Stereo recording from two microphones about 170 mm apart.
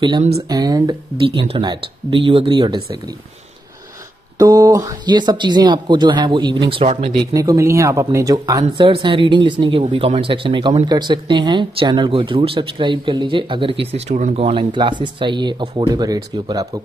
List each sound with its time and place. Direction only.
0.5 s speech: 20° right (ahead or behind)
4.4 s speech: 20° right (ahead or behind)
7.3 s speech: 20° right (ahead or behind)